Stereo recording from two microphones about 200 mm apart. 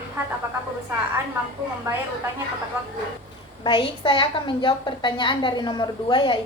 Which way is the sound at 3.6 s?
25° left (ahead or behind).